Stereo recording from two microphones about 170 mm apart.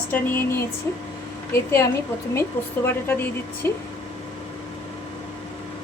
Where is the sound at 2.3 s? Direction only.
15° left (ahead or behind).